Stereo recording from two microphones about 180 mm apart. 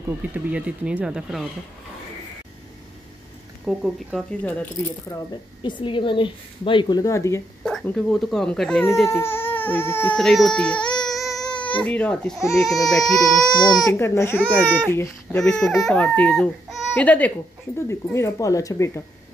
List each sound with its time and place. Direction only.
0.3 s speech: 10° right (ahead or behind)
3.6 s speech: centre (ahead or behind)
5.1 s a woman's voice: 25° left (ahead or behind)
7.6 s speech: 5° left (ahead or behind)
9.1 s speech: 15° left (ahead or behind)
11.0 s baby cry: centre (ahead or behind)
11.8 s speech: 5° left (ahead or behind)
13.7 s speech: 20° left (ahead or behind)
15.4 s speech: centre (ahead or behind)